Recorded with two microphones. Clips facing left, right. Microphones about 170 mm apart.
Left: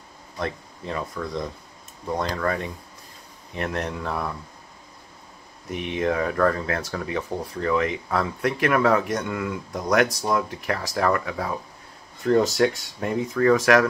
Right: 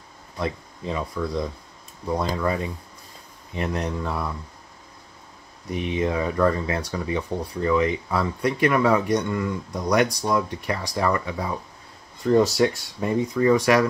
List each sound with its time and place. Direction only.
0.4 s speech: 5° right (ahead or behind)
5.7 s speech: centre (ahead or behind)